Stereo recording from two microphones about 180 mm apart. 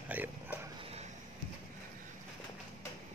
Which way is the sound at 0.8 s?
35° right (ahead or behind).